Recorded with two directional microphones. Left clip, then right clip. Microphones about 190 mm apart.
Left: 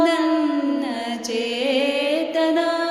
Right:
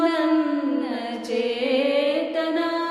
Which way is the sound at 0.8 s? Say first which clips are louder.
Left 2 dB; 45° left (ahead or behind).